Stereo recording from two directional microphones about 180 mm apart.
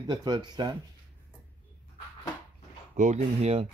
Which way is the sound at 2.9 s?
40° right (ahead or behind).